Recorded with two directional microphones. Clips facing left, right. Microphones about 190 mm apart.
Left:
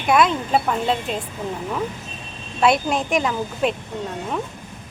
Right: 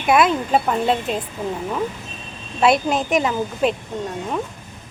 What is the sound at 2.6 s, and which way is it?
Speech, centre (ahead or behind).